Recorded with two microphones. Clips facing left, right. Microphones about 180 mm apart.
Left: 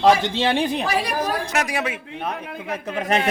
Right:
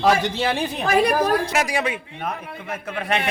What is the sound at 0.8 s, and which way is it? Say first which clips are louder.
Speech: right 5 dB; 50° right (ahead or behind).